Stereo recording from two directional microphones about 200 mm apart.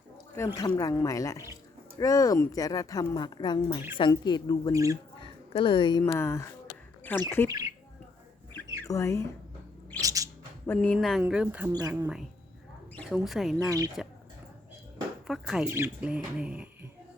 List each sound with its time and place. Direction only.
0.3 s a woman's voice: 15° left (ahead or behind)
4.7 s speech: 15° right (ahead or behind)
5.5 s a woman's voice: 25° left (ahead or behind)
6.0 s speech: 10° left (ahead or behind)
8.5 s rodents: 15° left (ahead or behind)
10.0 s bird: 15° right (ahead or behind)
10.7 s speech: 5° left (ahead or behind)
11.7 s speech: 20° right (ahead or behind)
13.0 s speech: centre (ahead or behind)
14.0 s a sound: centre (ahead or behind)
15.3 s speech: 5° right (ahead or behind)